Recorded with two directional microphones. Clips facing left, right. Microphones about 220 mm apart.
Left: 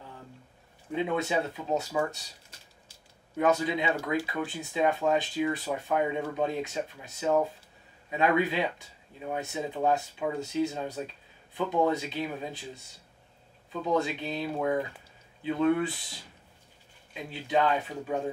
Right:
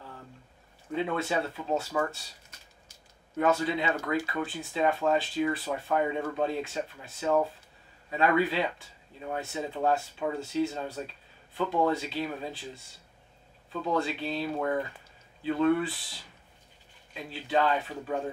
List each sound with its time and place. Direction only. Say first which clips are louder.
0.9 s speech: left 1 dB; 15° left (ahead or behind)
3.3 s speech: left 1 dB; 15° left (ahead or behind)
13.8 s speech: left 1 dB; 15° left (ahead or behind)
17.1 s speech: left 1 dB; 10° left (ahead or behind)